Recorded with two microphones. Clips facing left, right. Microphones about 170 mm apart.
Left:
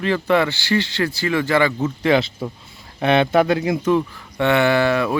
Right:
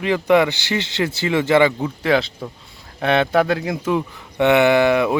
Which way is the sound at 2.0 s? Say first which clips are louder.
Left 1 dB; centre (ahead or behind).